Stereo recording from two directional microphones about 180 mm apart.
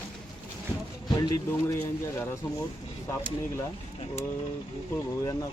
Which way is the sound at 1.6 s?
15° left (ahead or behind).